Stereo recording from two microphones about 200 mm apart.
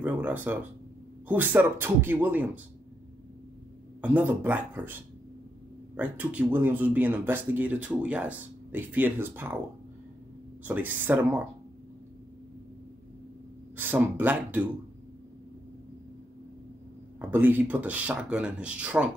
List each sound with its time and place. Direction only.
0.0 s speech: 10° right (ahead or behind)
4.0 s speech: 10° right (ahead or behind)
10.6 s speech: 10° right (ahead or behind)
13.7 s speech: 10° right (ahead or behind)
17.2 s speech: 10° right (ahead or behind)